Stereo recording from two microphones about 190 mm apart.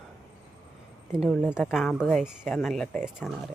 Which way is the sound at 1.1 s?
5° right (ahead or behind).